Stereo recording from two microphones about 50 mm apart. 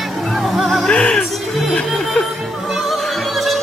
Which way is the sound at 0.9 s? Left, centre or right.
Centre.